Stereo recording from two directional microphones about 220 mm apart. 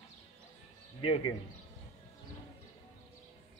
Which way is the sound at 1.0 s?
25° left (ahead or behind).